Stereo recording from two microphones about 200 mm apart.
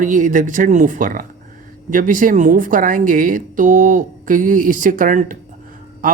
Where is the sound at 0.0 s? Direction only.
40° right (ahead or behind).